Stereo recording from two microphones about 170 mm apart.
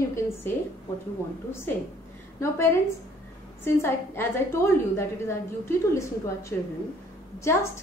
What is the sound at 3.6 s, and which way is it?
A woman's voice, 15° left (ahead or behind).